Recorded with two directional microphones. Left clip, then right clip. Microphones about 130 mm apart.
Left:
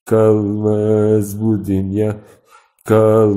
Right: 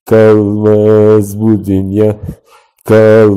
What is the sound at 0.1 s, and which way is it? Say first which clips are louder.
Speech: right 7 dB; 35° right (ahead or behind).